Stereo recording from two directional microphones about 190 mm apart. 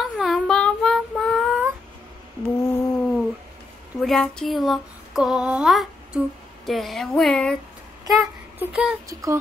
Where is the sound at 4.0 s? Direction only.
5° left (ahead or behind).